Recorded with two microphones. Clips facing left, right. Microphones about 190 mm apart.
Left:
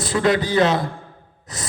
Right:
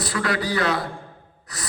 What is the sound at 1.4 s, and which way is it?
Sigh, 20° left (ahead or behind).